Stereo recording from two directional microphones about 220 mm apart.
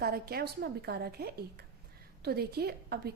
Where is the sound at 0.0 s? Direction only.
45° right (ahead or behind).